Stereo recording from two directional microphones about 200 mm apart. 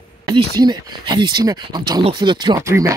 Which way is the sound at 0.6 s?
20° right (ahead or behind).